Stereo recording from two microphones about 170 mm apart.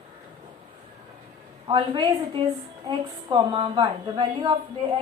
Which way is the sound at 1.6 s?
30° right (ahead or behind).